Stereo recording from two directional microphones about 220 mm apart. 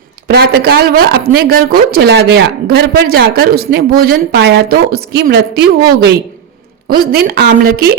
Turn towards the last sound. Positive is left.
turn(degrees=-45)  # may be behind; listen again after turning